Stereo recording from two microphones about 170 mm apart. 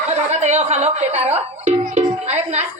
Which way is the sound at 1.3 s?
40° right (ahead or behind).